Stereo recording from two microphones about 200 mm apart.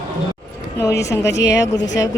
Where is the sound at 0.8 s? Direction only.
15° left (ahead or behind).